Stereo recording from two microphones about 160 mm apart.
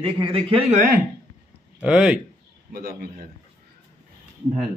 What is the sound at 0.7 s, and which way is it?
Speech, 65° right (ahead or behind).